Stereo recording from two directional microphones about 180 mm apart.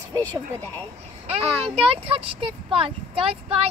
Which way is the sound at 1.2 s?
35° right (ahead or behind).